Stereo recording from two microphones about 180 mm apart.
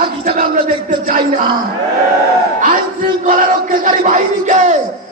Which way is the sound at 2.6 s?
50° right (ahead or behind).